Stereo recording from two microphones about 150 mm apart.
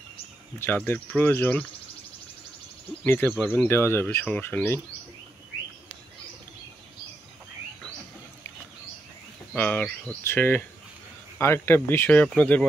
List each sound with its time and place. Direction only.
0.6 s speech: 15° left (ahead or behind)
3.1 s speech: 15° left (ahead or behind)
9.6 s speech: 10° left (ahead or behind)